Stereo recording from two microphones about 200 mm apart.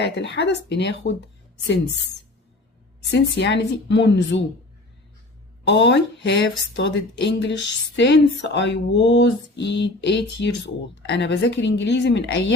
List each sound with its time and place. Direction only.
0.0 s speech: 60° left (ahead or behind)
3.1 s speech: 60° left (ahead or behind)
5.6 s speech: 60° left (ahead or behind)